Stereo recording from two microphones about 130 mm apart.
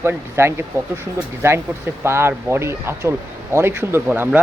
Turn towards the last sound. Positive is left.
turn(degrees=-15)  # may be behind; listen again after turning